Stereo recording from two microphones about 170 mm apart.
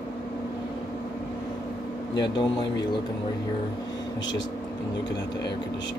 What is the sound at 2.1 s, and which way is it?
Speech, 25° left (ahead or behind).